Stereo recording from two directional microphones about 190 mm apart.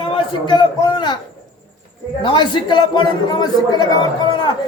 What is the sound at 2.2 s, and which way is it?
Speech, 25° left (ahead or behind).